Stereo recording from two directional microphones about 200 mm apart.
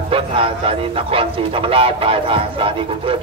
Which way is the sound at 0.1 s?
25° right (ahead or behind).